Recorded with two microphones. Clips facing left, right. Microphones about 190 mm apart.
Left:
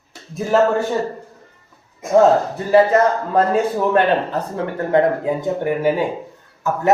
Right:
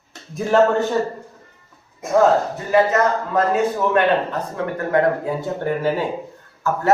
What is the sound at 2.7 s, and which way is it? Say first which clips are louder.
Speech: left 3 dB; 30° left (ahead or behind).